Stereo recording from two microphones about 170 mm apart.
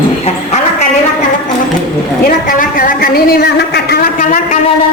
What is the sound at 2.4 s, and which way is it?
A woman's voice, 55° left (ahead or behind).